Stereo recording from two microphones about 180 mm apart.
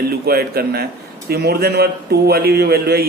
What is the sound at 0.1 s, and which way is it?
A man's voice, 55° right (ahead or behind).